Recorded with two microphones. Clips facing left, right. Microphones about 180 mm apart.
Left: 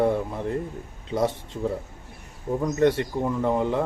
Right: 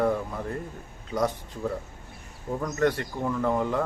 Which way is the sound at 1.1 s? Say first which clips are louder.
Left 2 dB; 25° left (ahead or behind).